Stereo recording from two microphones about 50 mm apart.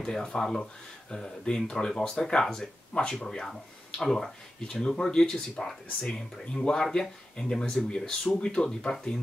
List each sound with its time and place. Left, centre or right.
0.0 s speech: centre
2.9 s speech: centre
3.3 s speech: centre